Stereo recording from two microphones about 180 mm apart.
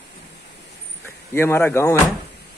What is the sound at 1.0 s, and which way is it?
Speech, 15° left (ahead or behind).